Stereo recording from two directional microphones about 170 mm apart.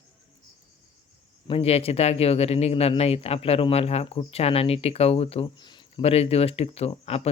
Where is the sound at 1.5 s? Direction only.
35° left (ahead or behind).